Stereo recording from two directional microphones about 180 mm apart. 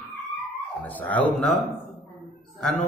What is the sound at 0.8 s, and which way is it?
Speech, 10° left (ahead or behind).